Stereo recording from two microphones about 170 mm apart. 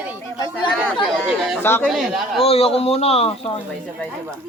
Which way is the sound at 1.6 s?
15° left (ahead or behind).